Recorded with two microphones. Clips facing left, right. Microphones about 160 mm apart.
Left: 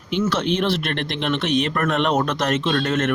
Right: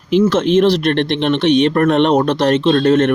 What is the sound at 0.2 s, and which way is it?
Speech, 45° right (ahead or behind).